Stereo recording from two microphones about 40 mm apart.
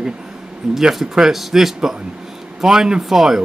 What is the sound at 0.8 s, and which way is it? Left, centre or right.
Speech, centre.